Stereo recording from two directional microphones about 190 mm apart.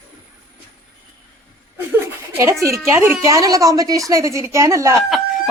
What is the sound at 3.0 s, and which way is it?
A woman's voice, 15° right (ahead or behind).